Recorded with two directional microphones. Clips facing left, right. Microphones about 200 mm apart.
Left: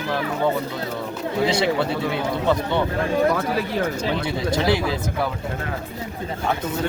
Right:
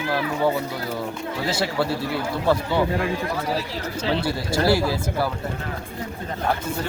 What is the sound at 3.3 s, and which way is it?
Speech, 55° left (ahead or behind).